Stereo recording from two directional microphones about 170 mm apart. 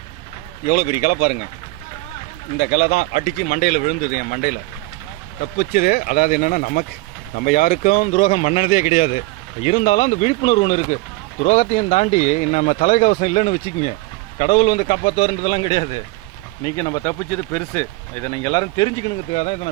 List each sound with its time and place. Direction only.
0.6 s speech: 60° left (ahead or behind)
2.6 s speech: 65° left (ahead or behind); by 16.0 s 40° left (ahead or behind)
16.6 s speech: 20° left (ahead or behind); by 19.7 s 40° left (ahead or behind)